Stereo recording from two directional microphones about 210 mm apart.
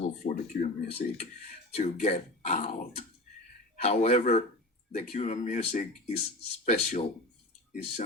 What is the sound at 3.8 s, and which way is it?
Speech, 30° left (ahead or behind).